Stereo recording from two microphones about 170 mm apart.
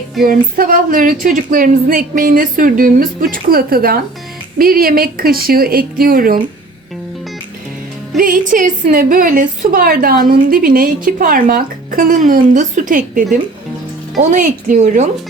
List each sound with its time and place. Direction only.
0.3 s a woman's voice: 55° right (ahead or behind)
8.2 s a woman's voice: 55° right (ahead or behind)